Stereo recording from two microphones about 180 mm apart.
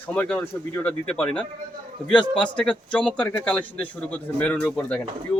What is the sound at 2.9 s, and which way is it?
Speech, 5° left (ahead or behind).